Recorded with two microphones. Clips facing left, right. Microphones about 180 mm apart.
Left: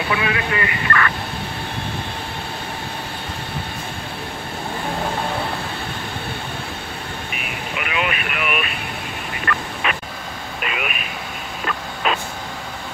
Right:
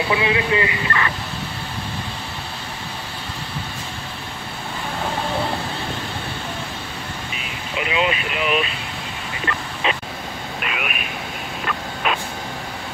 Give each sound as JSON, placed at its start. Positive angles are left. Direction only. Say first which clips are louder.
{"t": 0.1, "sound": "speech", "louder": "right 3 dB", "side_deg": -20}
{"t": 7.7, "sound": "speech", "louder": "right 3 dB", "side_deg": -25}
{"t": 9.8, "sound": "vehicle", "louder": "right 2 dB", "side_deg": -25}
{"t": 10.6, "sound": "speech", "louder": "left 2 dB", "side_deg": 0}
{"t": 11.6, "sound": "vehicle", "louder": "left 1 dB", "side_deg": -5}